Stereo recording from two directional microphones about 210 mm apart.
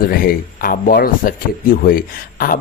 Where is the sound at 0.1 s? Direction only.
45° left (ahead or behind).